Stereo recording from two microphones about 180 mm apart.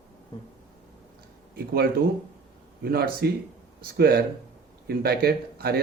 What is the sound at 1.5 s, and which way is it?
Speech, 60° right (ahead or behind).